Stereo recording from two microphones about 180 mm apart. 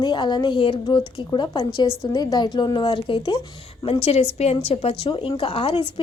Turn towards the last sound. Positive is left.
turn(degrees=30)  # may be behind; listen again after turning